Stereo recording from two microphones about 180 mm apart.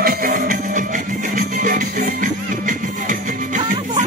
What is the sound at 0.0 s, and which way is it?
Music, 50° right (ahead or behind).